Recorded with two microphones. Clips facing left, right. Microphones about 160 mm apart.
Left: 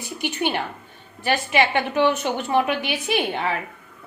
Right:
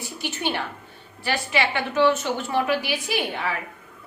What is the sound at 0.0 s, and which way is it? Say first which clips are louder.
Speech: left 4 dB; 15° left (ahead or behind).